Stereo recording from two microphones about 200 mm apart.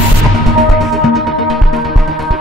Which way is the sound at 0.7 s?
Centre (ahead or behind).